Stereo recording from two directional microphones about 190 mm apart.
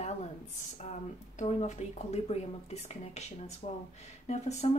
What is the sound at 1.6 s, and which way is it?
Speech, 35° left (ahead or behind).